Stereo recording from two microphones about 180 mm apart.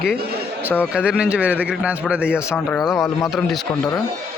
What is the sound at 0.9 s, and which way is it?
A man's voice, 5° right (ahead or behind).